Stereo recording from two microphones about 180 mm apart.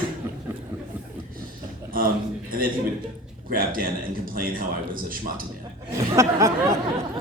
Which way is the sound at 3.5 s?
50° right (ahead or behind).